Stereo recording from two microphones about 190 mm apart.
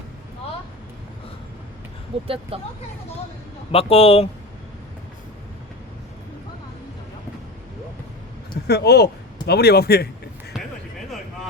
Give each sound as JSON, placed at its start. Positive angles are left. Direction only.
{"t": 2.2, "sound": "speech", "side_deg": -30}
{"t": 3.7, "sound": "speech", "side_deg": 30}
{"t": 8.6, "sound": "a man's voice", "side_deg": 60}